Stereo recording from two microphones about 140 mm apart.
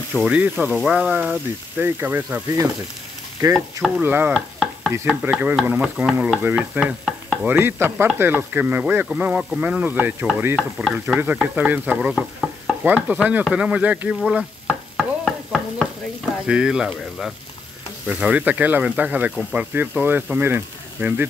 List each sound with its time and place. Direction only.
0.1 s speech: 10° right (ahead or behind)
3.3 s frying: 25° right (ahead or behind)
4.0 s speech: 15° right (ahead or behind)
6.8 s stir: centre (ahead or behind)
7.4 s speech: 15° right (ahead or behind)
13.5 s stir: 10° right (ahead or behind)
16.4 s speech: 5° right (ahead or behind)